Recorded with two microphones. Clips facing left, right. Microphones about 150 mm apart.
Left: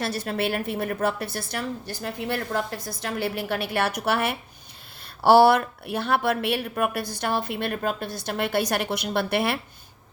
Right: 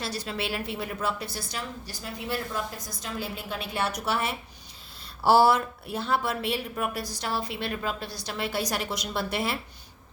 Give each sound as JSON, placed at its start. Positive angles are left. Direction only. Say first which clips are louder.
{"t": 0.0, "sound": "a woman's voice", "louder": "left 6 dB", "side_deg": 55}